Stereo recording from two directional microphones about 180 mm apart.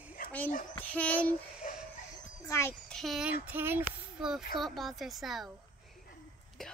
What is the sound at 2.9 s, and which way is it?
Speech, centre (ahead or behind).